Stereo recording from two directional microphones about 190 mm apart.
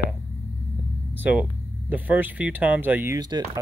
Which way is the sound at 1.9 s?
10° right (ahead or behind).